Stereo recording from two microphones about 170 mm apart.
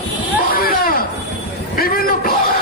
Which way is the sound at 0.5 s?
60° left (ahead or behind).